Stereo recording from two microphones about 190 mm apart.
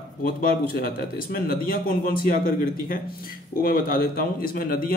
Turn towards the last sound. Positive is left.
turn(degrees=50)  # may be behind; listen again after turning